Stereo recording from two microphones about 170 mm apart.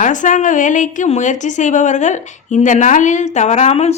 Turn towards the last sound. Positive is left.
turn(degrees=40)  # may be behind; listen again after turning